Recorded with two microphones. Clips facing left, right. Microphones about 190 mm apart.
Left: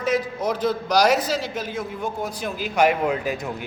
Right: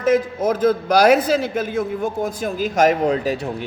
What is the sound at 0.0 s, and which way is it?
A man's voice, 50° right (ahead or behind).